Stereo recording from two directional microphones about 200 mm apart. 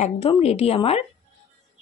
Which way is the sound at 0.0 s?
30° left (ahead or behind).